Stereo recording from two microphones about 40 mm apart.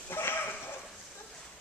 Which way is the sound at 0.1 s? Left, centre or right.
Left.